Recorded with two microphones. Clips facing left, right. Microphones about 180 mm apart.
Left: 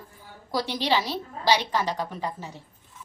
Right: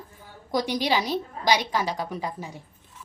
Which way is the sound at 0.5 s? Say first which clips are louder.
Right 1 dB; 15° right (ahead or behind).